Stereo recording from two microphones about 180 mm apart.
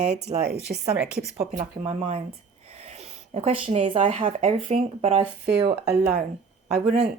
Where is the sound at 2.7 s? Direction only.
35° right (ahead or behind).